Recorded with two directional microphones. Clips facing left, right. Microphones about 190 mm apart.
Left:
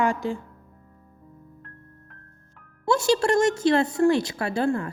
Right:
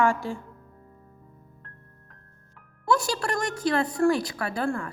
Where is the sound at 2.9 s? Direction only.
25° left (ahead or behind).